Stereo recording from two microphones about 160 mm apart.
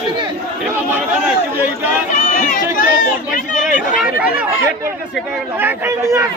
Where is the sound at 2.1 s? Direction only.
55° left (ahead or behind).